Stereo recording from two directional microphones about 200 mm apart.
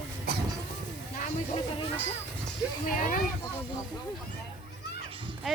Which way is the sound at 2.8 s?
40° left (ahead or behind).